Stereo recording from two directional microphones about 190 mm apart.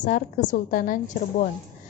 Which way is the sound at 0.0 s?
45° left (ahead or behind).